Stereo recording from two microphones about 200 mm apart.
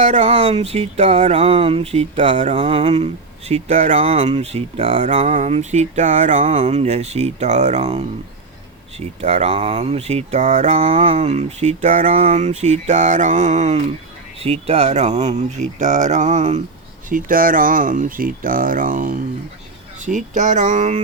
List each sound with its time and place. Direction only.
0.0 s speech: 35° right (ahead or behind)